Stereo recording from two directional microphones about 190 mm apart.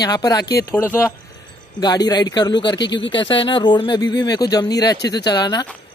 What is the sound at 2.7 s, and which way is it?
Speech, 70° left (ahead or behind).